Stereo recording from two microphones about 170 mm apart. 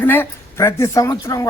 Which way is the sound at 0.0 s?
10° left (ahead or behind).